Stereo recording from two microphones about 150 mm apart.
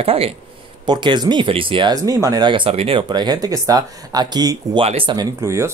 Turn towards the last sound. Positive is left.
turn(degrees=-20)  # may be behind; listen again after turning